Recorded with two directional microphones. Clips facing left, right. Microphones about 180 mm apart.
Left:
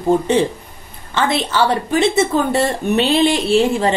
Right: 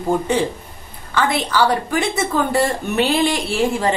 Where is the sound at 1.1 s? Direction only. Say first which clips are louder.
Left 1 dB; 25° left (ahead or behind).